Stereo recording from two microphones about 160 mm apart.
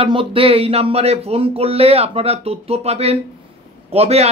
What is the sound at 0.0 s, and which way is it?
Speech, 35° right (ahead or behind).